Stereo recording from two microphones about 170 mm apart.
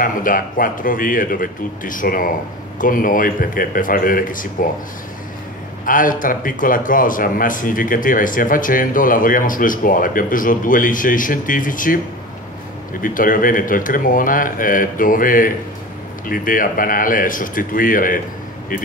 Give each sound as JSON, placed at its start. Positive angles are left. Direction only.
{"t": 0.0, "sound": "a man's voice", "side_deg": 55}
{"t": 5.9, "sound": "a man's voice", "side_deg": 55}
{"t": 13.0, "sound": "a man's voice", "side_deg": 55}